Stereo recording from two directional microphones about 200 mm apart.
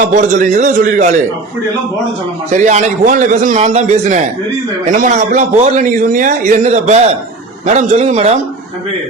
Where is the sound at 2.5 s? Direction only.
35° right (ahead or behind).